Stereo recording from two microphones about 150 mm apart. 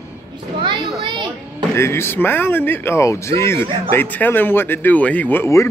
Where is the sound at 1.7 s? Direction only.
15° left (ahead or behind).